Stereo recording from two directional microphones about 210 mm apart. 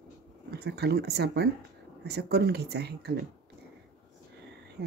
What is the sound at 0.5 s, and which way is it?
Speech, 50° right (ahead or behind).